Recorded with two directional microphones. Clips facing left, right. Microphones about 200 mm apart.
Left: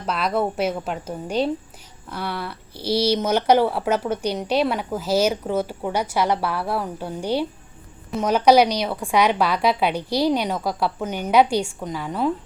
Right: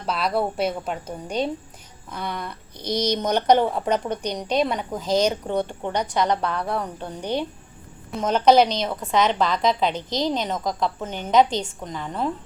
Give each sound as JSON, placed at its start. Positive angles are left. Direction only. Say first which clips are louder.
{"t": 0.3, "sound": "speech", "louder": "left 2 dB", "side_deg": 5}